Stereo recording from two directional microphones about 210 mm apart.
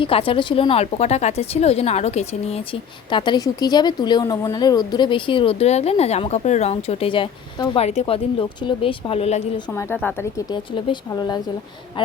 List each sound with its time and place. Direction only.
0.0 s speech: 25° left (ahead or behind)
9.7 s a woman's voice: 10° left (ahead or behind)
10.5 s speech: 20° left (ahead or behind)